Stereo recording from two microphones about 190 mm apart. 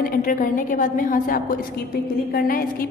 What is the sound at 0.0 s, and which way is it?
A woman's voice, 45° left (ahead or behind).